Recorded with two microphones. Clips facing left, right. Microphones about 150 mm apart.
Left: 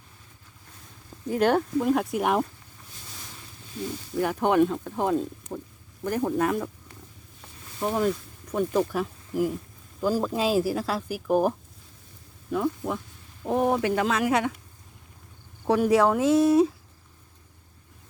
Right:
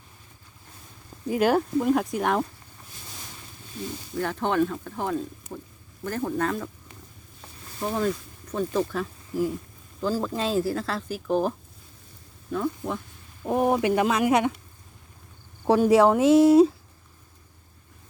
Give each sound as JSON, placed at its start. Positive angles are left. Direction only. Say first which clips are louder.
{"t": 1.3, "sound": "speech", "louder": "right 1 dB", "side_deg": -5}
{"t": 4.2, "sound": "speech", "louder": "left 3 dB", "side_deg": 15}
{"t": 7.8, "sound": "speech", "louder": "left 1 dB", "side_deg": 10}
{"t": 13.4, "sound": "speech", "louder": "right 1 dB", "side_deg": -10}
{"t": 15.6, "sound": "speech", "louder": "right 3 dB", "side_deg": -30}